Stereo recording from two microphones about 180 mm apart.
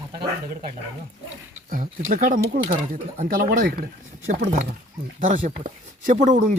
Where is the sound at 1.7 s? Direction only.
50° right (ahead or behind).